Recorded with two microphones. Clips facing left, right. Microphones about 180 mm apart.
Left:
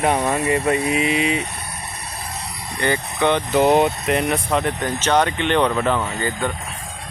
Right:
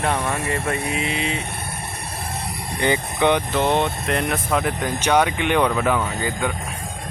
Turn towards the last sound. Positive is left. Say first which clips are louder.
# left 1 dB
turn(degrees=-10)  # may be behind; listen again after turning